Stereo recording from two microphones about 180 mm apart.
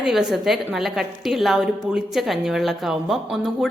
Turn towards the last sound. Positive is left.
turn(degrees=0)  # may be behind; listen again after turning